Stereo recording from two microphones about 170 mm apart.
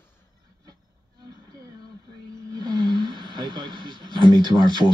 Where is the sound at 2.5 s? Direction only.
25° right (ahead or behind).